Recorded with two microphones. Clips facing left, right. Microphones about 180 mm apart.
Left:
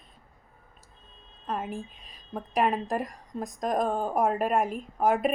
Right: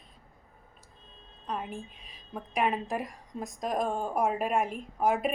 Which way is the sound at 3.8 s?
40° left (ahead or behind).